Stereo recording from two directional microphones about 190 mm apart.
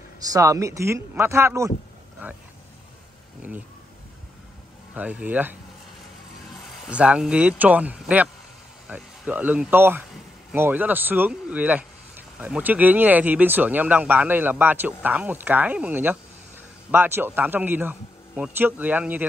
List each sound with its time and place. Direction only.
0.2 s speech: 15° right (ahead or behind)
4.9 s speech: 10° right (ahead or behind)
6.9 s speech: 5° right (ahead or behind)